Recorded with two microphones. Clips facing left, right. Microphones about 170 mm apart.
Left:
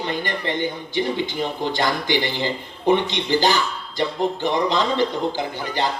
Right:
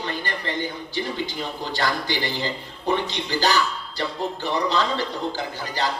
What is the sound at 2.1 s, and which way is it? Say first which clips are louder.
A man's voice: left 4 dB; 20° left (ahead or behind).